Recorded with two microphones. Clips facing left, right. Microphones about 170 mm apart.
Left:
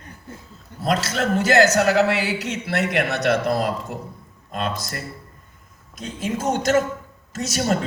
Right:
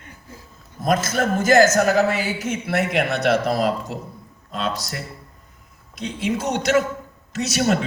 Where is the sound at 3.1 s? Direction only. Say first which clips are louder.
Right 1 dB; 60° right (ahead or behind).